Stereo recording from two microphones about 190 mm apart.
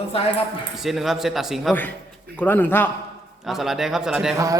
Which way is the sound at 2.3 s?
10° left (ahead or behind).